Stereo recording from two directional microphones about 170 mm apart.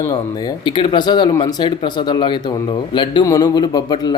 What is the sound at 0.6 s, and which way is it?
Speech, 30° left (ahead or behind).